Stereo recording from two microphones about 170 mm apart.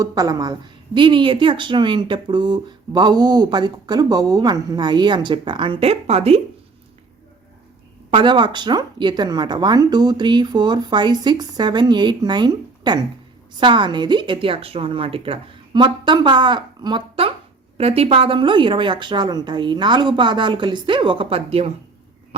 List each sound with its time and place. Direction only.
0.0 s speech: 20° right (ahead or behind)
8.1 s speech: 30° right (ahead or behind)